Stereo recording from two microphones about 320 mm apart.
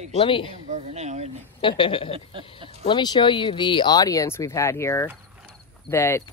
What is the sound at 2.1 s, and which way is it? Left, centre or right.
Speech, centre.